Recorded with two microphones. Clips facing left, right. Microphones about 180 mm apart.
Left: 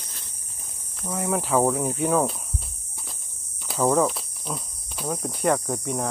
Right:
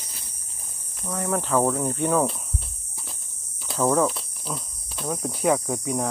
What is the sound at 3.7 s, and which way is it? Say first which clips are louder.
Cricket: even; centre (ahead or behind).